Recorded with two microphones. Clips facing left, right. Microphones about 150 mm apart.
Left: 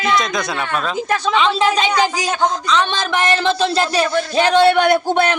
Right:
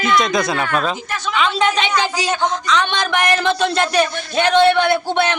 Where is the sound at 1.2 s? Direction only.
30° left (ahead or behind).